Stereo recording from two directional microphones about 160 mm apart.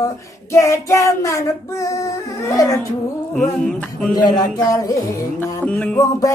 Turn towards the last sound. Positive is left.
turn(degrees=20)  # may be behind; listen again after turning